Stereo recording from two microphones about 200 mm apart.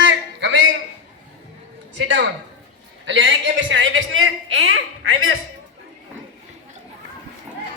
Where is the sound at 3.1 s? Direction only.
60° right (ahead or behind); by 4.7 s 85° right.